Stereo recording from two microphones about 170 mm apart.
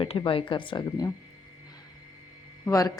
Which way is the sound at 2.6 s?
20° left (ahead or behind).